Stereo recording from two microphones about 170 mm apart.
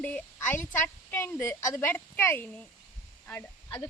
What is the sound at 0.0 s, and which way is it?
A woman's voice, 10° left (ahead or behind).